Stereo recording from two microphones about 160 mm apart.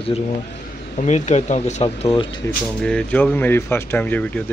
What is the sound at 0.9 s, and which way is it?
Speech, 45° left (ahead or behind).